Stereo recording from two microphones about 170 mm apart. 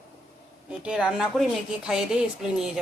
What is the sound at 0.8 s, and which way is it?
Speech, 5° right (ahead or behind).